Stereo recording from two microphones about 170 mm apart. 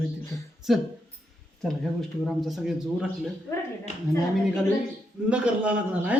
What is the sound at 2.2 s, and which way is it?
Speech, centre (ahead or behind).